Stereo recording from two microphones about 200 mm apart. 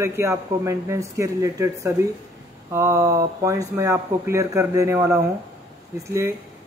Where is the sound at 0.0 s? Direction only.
15° right (ahead or behind).